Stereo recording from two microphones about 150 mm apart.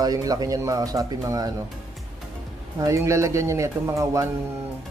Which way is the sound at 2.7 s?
20° right (ahead or behind).